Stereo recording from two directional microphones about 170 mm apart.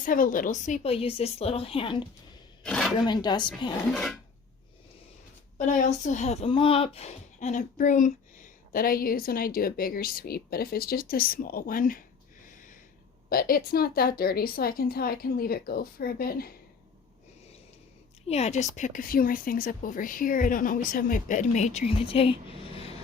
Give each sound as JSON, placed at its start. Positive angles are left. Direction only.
{"t": 0.0, "sound": "a woman's voice", "side_deg": 55}
{"t": 2.6, "sound": "a sound", "side_deg": 5}
{"t": 3.0, "sound": "speech", "side_deg": 25}
{"t": 3.9, "sound": "filing", "side_deg": 0}
{"t": 5.5, "sound": "speech", "side_deg": 50}
{"t": 13.3, "sound": "speech", "side_deg": 60}
{"t": 18.3, "sound": "a woman's voice", "side_deg": 40}